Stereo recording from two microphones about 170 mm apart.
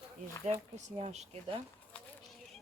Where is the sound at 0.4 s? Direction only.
40° right (ahead or behind).